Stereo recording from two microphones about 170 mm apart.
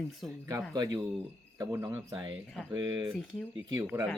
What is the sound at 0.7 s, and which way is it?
Speech, 25° right (ahead or behind).